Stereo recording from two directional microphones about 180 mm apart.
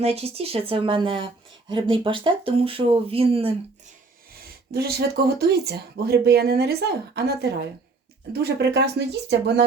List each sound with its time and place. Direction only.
0.0 s speech: 35° right (ahead or behind)
4.7 s speech: 60° right (ahead or behind)